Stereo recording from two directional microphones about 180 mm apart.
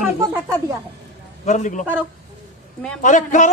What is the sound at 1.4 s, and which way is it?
Speech, 45° left (ahead or behind).